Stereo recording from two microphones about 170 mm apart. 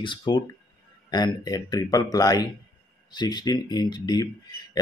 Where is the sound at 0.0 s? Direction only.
25° left (ahead or behind).